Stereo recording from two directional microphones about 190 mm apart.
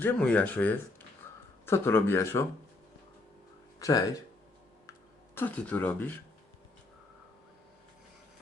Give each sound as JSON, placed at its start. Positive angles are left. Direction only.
{"t": 0.0, "sound": "speech", "side_deg": 10}
{"t": 3.8, "sound": "speech", "side_deg": 20}
{"t": 5.3, "sound": "speech", "side_deg": 10}